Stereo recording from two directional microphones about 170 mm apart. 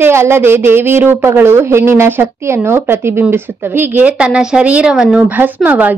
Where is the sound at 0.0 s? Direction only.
15° right (ahead or behind).